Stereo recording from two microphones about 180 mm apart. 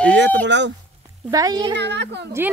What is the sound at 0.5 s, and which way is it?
Speech, 75° right (ahead or behind).